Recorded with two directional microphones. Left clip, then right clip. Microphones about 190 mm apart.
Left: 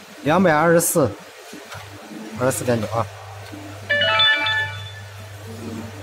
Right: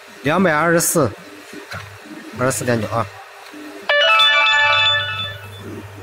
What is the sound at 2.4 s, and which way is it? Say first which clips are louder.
Speech: right 2 dB; 10° right (ahead or behind).